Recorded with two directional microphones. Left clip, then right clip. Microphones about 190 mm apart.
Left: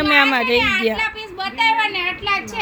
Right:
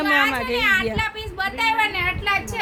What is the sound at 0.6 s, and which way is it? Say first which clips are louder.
Speech: left 1 dB; 50° right (ahead or behind).